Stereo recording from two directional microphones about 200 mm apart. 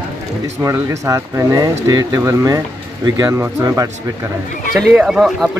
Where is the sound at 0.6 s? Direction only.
15° right (ahead or behind).